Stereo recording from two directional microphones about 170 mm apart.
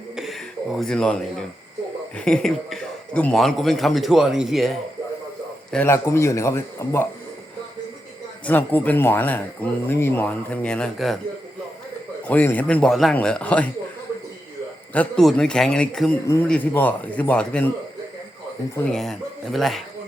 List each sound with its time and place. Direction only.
0.2 s a man's voice: centre (ahead or behind)
5.7 s speech: 15° left (ahead or behind)
8.4 s speech: 10° left (ahead or behind)
12.3 s speech: 10° left (ahead or behind)
14.9 s a man's voice: 5° left (ahead or behind)
16.2 s speech: 15° left (ahead or behind)
18.8 s a man's voice: 5° left (ahead or behind)